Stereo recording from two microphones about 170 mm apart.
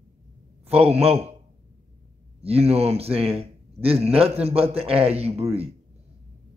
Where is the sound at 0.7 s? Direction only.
35° right (ahead or behind).